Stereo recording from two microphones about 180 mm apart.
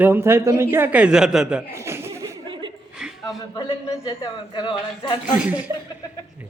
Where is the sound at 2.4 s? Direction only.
25° right (ahead or behind).